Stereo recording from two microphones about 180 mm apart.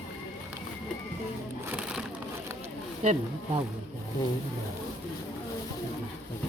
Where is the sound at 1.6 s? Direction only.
10° right (ahead or behind).